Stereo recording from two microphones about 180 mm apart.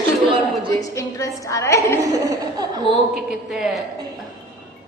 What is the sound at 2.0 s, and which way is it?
Speech, 15° right (ahead or behind).